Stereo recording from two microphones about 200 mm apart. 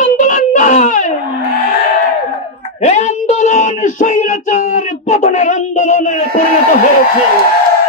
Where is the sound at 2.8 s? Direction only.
35° left (ahead or behind).